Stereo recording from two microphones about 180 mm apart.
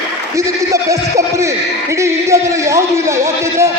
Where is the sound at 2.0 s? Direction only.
15° right (ahead or behind).